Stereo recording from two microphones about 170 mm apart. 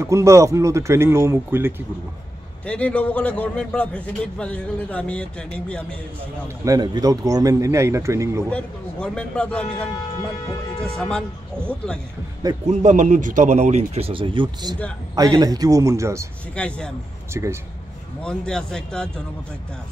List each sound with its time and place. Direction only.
0.0 s speech: 15° right (ahead or behind)
2.6 s a man's voice: 5° left (ahead or behind)
6.6 s speech: 20° right (ahead or behind)
8.5 s a man's voice: 5° left (ahead or behind)
11.0 s speech: 5° left (ahead or behind)
12.6 s speech: 45° right (ahead or behind); by 16.3 s 15° right (ahead or behind)
16.5 s a man's voice: 5° left (ahead or behind)
17.3 s speech: 15° right (ahead or behind)
18.2 s speech: 5° left (ahead or behind)